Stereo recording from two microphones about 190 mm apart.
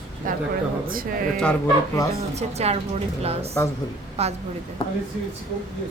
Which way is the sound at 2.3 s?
35° right (ahead or behind).